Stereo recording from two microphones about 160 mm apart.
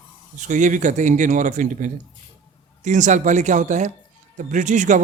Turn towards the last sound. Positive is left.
turn(degrees=-50)  # may be behind; listen again after turning